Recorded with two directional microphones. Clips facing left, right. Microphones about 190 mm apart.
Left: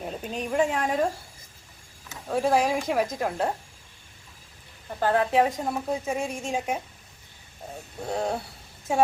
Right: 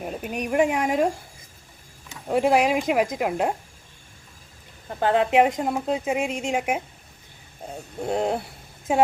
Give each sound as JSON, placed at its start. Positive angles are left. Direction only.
{"t": 0.0, "sound": "speech", "side_deg": -10}
{"t": 2.2, "sound": "speech", "side_deg": -15}
{"t": 4.9, "sound": "a woman's voice", "side_deg": -20}
{"t": 8.0, "sound": "a woman's voice", "side_deg": -20}